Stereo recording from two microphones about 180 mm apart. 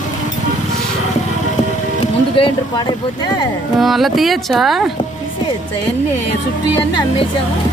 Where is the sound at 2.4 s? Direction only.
30° left (ahead or behind).